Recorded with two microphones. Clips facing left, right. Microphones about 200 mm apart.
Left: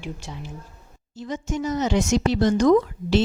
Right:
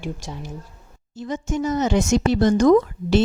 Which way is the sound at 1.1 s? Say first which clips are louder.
Right 3 dB; 50° right (ahead or behind).